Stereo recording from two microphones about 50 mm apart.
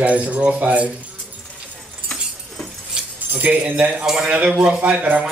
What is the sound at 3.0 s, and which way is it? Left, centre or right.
Keys jangling, centre.